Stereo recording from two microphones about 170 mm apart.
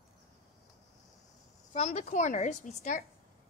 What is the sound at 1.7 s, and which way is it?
A woman's voice, 40° left (ahead or behind).